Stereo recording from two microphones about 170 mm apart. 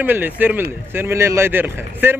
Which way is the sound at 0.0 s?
10° right (ahead or behind).